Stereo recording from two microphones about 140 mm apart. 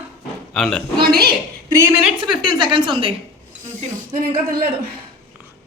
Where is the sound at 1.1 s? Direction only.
90° right.